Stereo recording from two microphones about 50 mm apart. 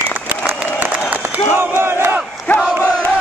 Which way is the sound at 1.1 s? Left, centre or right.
Right.